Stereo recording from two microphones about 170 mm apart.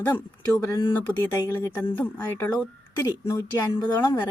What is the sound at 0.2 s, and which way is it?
Speech, 15° left (ahead or behind).